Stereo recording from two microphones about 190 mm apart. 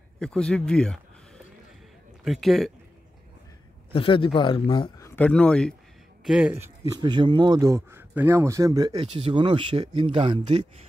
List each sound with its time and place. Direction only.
0.2 s speech: 5° left (ahead or behind)
2.2 s speech: centre (ahead or behind)
3.9 s speech: 25° left (ahead or behind)
5.1 s speech: 5° left (ahead or behind)
6.2 s speech: 5° right (ahead or behind); by 10.6 s 25° right (ahead or behind)